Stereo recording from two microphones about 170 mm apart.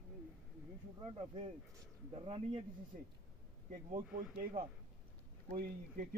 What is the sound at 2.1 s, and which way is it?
Speech, 30° right (ahead or behind).